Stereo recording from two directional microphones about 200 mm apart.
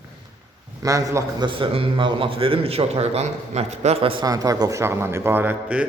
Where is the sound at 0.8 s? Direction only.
15° right (ahead or behind).